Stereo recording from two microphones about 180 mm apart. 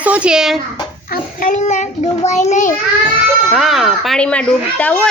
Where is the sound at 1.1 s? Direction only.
50° left (ahead or behind).